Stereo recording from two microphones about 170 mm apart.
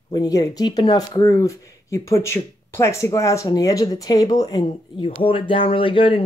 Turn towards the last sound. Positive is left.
turn(degrees=30)  # may be behind; listen again after turning